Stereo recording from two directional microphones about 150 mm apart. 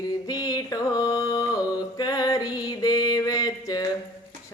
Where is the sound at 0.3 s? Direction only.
25° left (ahead or behind).